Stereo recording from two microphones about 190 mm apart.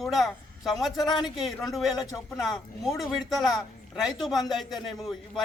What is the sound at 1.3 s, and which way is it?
A man's voice, centre (ahead or behind).